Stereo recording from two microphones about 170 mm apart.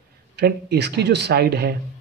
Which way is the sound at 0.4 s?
75° right (ahead or behind).